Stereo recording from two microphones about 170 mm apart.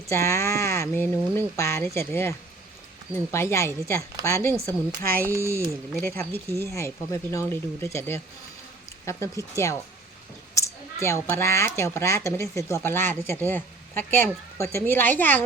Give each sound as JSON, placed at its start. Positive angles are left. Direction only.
{"t": 0.1, "sound": "speech", "side_deg": 15}
{"t": 3.3, "sound": "speech", "side_deg": 15}
{"t": 5.2, "sound": "speech", "side_deg": -15}
{"t": 6.0, "sound": "speech", "side_deg": 15}